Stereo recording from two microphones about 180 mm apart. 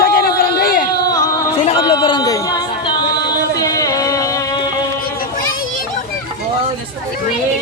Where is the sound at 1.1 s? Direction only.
20° left (ahead or behind).